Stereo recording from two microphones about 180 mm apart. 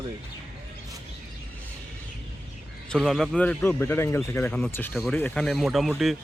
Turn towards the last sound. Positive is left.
turn(degrees=0)  # may be behind; listen again after turning